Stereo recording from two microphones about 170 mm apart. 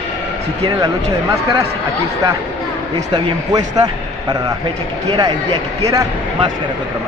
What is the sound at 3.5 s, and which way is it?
A man's voice, 25° right (ahead or behind).